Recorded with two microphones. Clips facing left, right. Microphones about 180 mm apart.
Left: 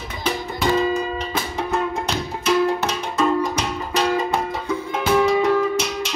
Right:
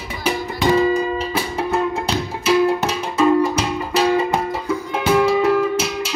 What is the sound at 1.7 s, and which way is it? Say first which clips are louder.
Music: right 2 dB; 5° right (ahead or behind).